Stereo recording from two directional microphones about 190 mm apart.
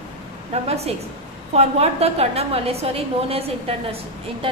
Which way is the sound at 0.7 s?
35° right (ahead or behind).